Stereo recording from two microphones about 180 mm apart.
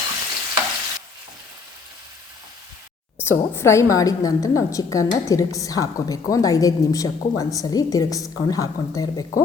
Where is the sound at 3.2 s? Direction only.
15° left (ahead or behind).